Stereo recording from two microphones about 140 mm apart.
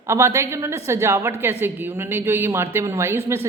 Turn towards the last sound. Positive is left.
turn(degrees=-20)  # may be behind; listen again after turning